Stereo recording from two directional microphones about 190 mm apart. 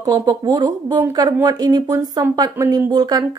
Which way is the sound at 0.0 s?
20° right (ahead or behind).